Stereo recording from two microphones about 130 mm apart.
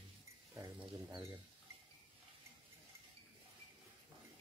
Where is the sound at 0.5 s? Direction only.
25° right (ahead or behind).